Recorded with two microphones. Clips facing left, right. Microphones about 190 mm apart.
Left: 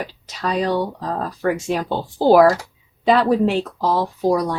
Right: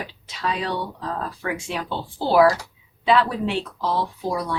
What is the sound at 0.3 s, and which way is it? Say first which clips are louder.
Speech: left 6 dB; 40° left (ahead or behind).